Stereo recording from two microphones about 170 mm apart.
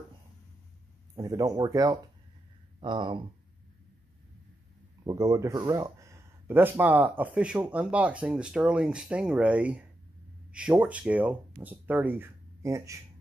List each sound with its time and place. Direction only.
1.1 s speech: 20° right (ahead or behind)
5.0 s speech: 20° right (ahead or behind)